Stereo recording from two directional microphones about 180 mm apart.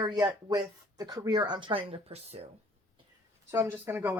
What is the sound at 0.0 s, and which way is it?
Speech, 25° right (ahead or behind).